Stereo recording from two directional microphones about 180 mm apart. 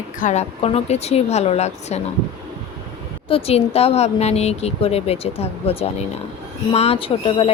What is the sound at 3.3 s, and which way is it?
Speech, 30° left (ahead or behind).